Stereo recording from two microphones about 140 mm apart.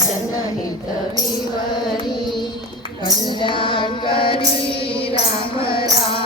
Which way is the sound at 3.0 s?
35° left (ahead or behind).